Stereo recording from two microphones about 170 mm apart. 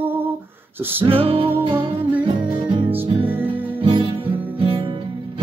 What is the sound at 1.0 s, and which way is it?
Music, 35° right (ahead or behind).